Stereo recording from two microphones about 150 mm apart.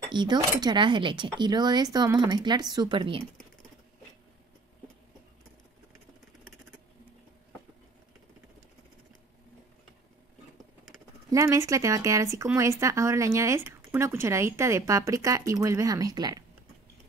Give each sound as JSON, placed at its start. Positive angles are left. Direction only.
{"t": 0.1, "sound": "a woman's voice", "side_deg": -30}
{"t": 11.2, "sound": "a woman's voice", "side_deg": -25}